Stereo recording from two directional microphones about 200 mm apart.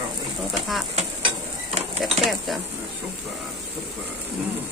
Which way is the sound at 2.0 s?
Centre (ahead or behind).